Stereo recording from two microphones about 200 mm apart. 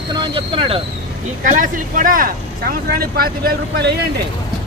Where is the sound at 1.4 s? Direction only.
40° right (ahead or behind).